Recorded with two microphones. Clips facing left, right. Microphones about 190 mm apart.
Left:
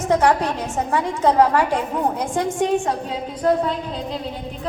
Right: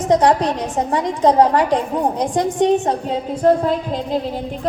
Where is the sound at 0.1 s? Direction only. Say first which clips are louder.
Right 3 dB; 15° right (ahead or behind).